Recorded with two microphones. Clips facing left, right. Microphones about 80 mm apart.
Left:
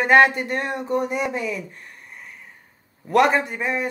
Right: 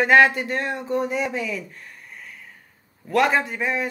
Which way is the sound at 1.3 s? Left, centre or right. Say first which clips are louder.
Left 1 dB; left.